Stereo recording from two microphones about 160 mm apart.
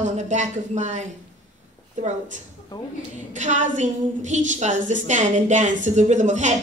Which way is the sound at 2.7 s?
25° left (ahead or behind).